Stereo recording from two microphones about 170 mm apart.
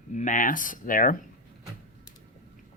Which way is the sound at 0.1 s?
45° left (ahead or behind).